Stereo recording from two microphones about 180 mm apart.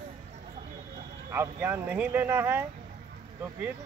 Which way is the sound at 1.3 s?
15° right (ahead or behind).